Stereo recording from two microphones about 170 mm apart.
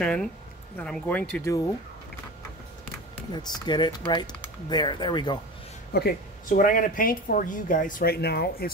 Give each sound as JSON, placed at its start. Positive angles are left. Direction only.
{"t": 0.0, "sound": "speech", "side_deg": 5}
{"t": 3.3, "sound": "speech", "side_deg": 25}
{"t": 5.9, "sound": "speech", "side_deg": 60}